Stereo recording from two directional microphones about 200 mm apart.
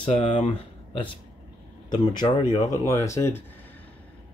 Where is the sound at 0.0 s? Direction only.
30° left (ahead or behind).